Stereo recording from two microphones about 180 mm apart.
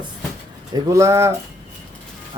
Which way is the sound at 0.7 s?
15° right (ahead or behind).